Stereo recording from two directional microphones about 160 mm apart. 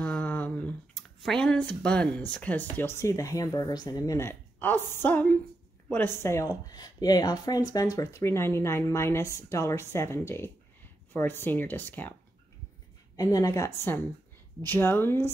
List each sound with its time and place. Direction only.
0.0 s speech: 10° left (ahead or behind)
13.1 s a woman's voice: 20° left (ahead or behind)